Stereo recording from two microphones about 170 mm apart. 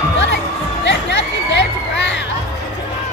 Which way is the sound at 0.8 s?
90° left.